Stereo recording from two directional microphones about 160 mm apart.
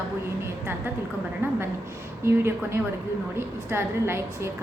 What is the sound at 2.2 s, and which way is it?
A woman's voice, 15° right (ahead or behind).